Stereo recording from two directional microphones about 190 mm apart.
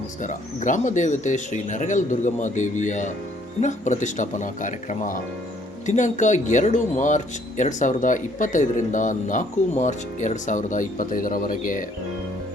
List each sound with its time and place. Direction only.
0.2 s speech: 40° left (ahead or behind)